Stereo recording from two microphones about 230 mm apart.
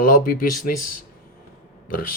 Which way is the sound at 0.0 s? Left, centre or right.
Left.